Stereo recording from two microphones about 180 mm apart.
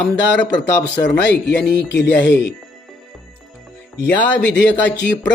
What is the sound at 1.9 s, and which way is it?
Speech, 75° left (ahead or behind).